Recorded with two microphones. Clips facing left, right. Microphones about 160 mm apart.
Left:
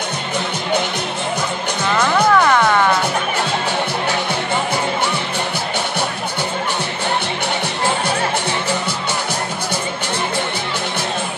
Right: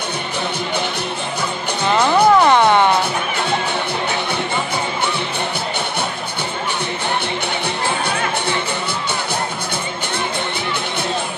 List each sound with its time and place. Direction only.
2.0 s music: 30° right (ahead or behind)